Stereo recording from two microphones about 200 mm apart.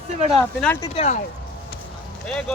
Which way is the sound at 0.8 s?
30° left (ahead or behind).